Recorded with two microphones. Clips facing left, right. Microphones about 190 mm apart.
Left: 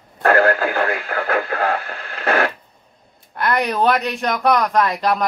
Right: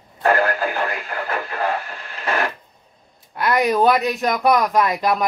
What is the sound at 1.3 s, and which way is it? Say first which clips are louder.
Radio: left 3 dB; 60° left (ahead or behind).